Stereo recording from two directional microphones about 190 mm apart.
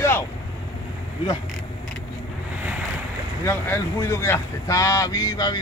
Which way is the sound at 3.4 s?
15° left (ahead or behind).